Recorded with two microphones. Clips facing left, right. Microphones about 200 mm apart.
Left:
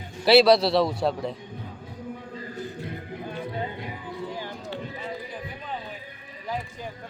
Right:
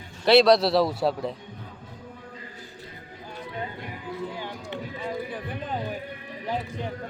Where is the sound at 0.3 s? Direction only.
Centre (ahead or behind).